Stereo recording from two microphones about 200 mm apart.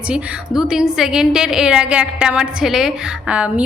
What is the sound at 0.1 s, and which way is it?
A woman's voice, 5° right (ahead or behind).